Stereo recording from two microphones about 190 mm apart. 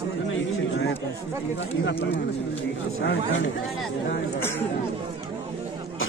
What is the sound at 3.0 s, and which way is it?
Speech, 80° left.